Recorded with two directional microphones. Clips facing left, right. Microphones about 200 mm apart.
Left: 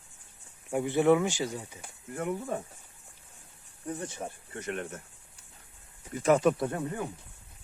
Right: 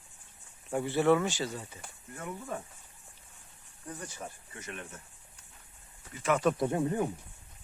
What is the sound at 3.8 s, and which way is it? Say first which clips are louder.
Speech: left 6 dB; 25° left (ahead or behind).